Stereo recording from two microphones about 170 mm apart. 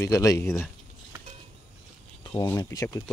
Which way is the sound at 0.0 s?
20° left (ahead or behind).